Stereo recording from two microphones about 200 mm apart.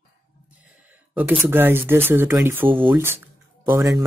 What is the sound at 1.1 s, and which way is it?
Speech, 10° right (ahead or behind).